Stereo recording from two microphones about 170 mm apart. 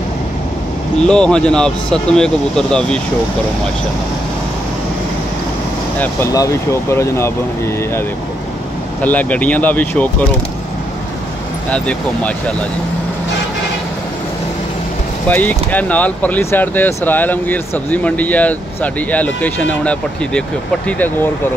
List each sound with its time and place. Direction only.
1.0 s speech: 5° left (ahead or behind)
6.3 s speech: 20° left (ahead or behind)
9.0 s speech: 10° left (ahead or behind)
15.2 s speech: 10° left (ahead or behind)